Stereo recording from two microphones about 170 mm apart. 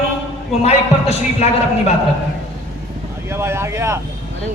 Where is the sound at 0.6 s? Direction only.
40° left (ahead or behind).